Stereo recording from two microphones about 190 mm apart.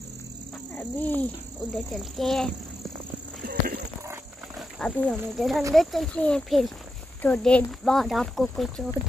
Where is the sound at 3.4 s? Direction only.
45° right (ahead or behind).